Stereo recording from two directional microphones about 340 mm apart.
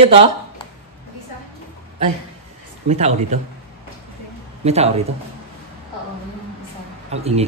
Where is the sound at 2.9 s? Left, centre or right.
Centre.